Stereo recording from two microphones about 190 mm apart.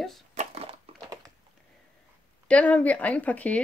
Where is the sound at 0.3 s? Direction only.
35° right (ahead or behind).